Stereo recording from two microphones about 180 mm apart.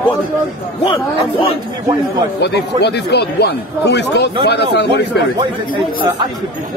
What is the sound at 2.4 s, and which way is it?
Speech, 65° left (ahead or behind).